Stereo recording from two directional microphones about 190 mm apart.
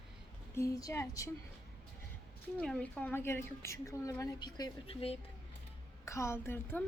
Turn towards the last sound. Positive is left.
turn(degrees=10)  # may be behind; listen again after turning